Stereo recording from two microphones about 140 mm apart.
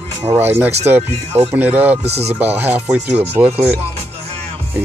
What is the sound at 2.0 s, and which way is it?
Speech, 50° right (ahead or behind).